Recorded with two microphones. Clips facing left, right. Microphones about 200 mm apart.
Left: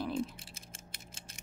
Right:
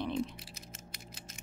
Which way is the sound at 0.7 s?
30° left (ahead or behind).